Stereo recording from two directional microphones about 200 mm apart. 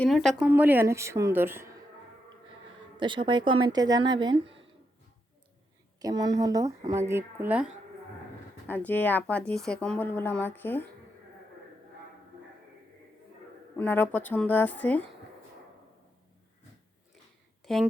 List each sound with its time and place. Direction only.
0.0 s a woman's voice: centre (ahead or behind)
3.0 s a woman's voice: 25° right (ahead or behind)
6.0 s a woman's voice: 20° right (ahead or behind)
8.6 s a woman's voice: 10° left (ahead or behind)
13.7 s a woman's voice: 10° left (ahead or behind)
17.7 s speech: centre (ahead or behind)